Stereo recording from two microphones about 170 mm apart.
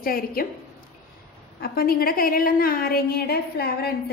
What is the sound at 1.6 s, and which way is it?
A woman's voice, 65° left (ahead or behind).